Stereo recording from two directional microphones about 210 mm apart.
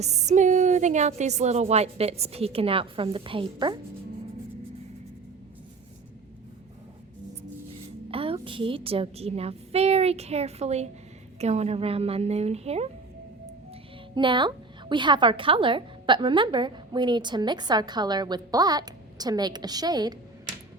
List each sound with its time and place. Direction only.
0.0 s a woman's voice: 30° right (ahead or behind)
8.1 s a woman's voice: 25° right (ahead or behind)
14.2 s a woman's voice: 20° right (ahead or behind)